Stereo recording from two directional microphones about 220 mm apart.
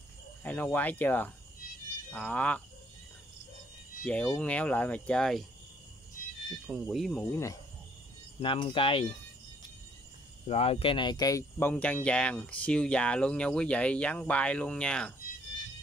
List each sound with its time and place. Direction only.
0.4 s speech: 5° left (ahead or behind)
4.0 s speech: 5° left (ahead or behind)
6.7 s speech: 5° right (ahead or behind)
8.4 s speech: 25° left (ahead or behind)
10.4 s speech: 25° left (ahead or behind); by 15.1 s 5° left (ahead or behind)